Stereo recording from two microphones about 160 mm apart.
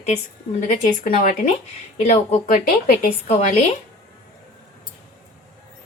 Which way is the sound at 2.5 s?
65° left (ahead or behind).